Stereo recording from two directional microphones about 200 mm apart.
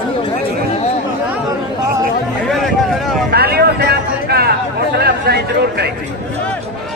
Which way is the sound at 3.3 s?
50° right (ahead or behind).